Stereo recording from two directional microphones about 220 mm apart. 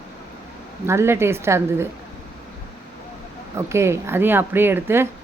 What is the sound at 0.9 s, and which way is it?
Speech, 10° right (ahead or behind).